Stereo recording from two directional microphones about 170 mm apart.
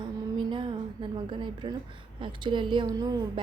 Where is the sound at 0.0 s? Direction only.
30° right (ahead or behind).